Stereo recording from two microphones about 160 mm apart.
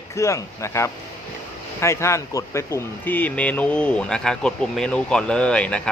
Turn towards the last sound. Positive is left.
turn(degrees=5)  # may be behind; listen again after turning